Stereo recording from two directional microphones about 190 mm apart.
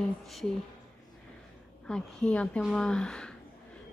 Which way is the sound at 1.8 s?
5° left (ahead or behind).